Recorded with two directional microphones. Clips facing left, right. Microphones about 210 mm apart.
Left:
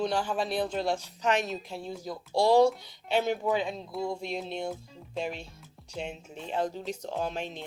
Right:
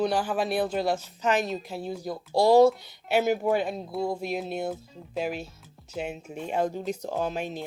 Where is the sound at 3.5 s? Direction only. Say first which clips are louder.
Right 3 dB; 50° right (ahead or behind).